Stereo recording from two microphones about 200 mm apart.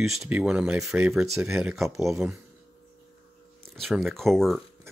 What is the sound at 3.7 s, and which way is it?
Speech, centre (ahead or behind).